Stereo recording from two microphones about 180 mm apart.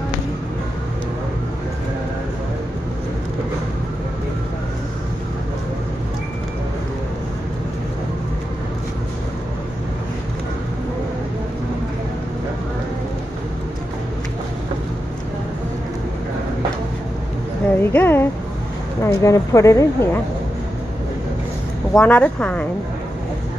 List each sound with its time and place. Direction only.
17.7 s a sound: 10° left (ahead or behind)
19.0 s speech: 15° left (ahead or behind)
21.9 s speech: 10° left (ahead or behind)